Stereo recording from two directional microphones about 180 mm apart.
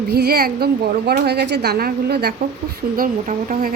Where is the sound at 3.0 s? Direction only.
50° right (ahead or behind).